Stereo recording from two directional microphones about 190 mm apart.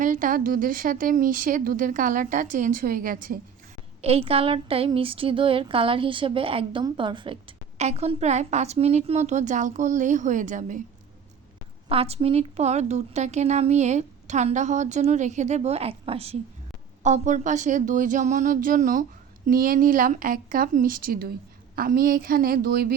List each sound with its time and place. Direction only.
0.0 s a woman's voice: 45° right (ahead or behind)
4.0 s a woman's voice: 30° right (ahead or behind)
11.9 s a woman's voice: 30° right (ahead or behind); by 23.0 s 55° right (ahead or behind)